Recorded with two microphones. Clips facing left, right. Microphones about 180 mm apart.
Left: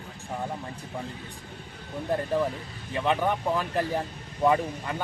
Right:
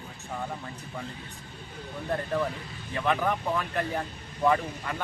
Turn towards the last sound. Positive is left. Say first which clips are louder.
# left 2 dB
turn(degrees=25)  # may be behind; listen again after turning